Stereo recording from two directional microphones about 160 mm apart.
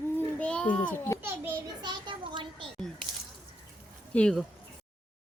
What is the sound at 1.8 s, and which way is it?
Speech, 30° right (ahead or behind).